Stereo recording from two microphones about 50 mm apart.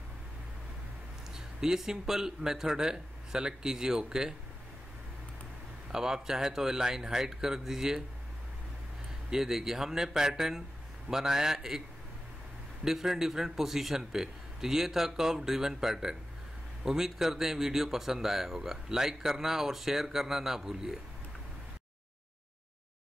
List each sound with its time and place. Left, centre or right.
1.3 s speech: centre
5.9 s speech: centre
9.3 s speech: centre
12.8 s speech: centre